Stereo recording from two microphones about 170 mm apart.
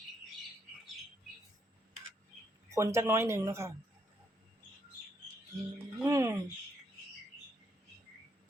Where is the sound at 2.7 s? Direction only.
15° right (ahead or behind).